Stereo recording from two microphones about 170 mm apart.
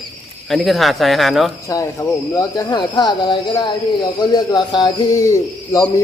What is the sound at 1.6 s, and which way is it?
Speech, 20° left (ahead or behind).